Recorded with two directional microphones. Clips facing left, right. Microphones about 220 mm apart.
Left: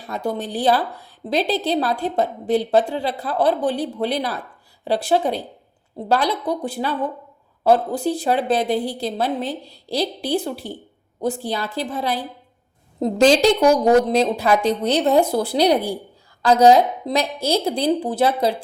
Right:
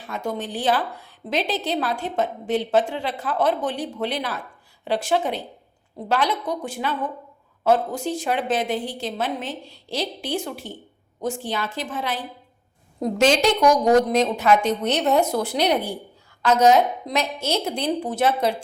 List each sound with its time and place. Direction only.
0.0 s a woman's voice: 35° left (ahead or behind)